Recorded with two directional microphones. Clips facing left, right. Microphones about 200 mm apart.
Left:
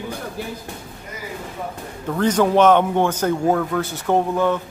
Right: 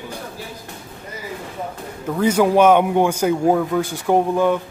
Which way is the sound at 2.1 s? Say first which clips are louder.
Right 1 dB; 10° right (ahead or behind).